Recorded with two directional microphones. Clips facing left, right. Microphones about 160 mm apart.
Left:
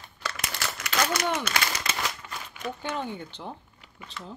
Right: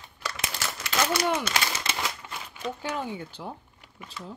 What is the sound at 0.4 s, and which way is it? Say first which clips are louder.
Crumpling: right 1 dB; 25° right (ahead or behind).